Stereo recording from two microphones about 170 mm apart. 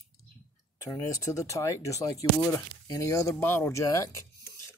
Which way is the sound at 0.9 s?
20° left (ahead or behind).